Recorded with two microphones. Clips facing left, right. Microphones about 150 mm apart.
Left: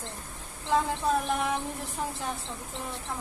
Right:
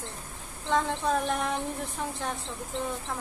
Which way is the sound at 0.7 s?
5° left (ahead or behind).